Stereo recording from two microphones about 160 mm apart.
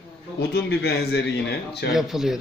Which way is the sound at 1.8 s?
Centre (ahead or behind).